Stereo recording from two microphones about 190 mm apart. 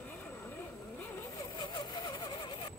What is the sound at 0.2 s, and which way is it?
Vehicle, 10° left (ahead or behind).